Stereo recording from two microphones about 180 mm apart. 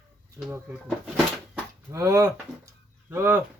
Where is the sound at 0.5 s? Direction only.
10° right (ahead or behind).